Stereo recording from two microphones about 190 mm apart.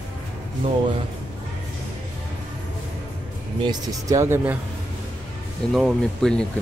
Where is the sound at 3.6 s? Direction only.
20° right (ahead or behind).